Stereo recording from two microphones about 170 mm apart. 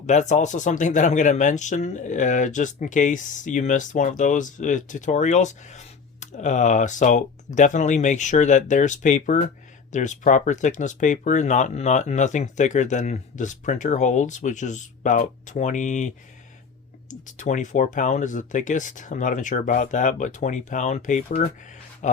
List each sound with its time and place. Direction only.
0.0 s speech: 45° left (ahead or behind)